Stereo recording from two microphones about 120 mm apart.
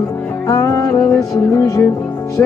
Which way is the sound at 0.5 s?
25° left (ahead or behind).